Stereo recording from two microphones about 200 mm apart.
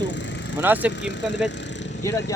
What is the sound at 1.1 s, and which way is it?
Vehicle, 65° left (ahead or behind).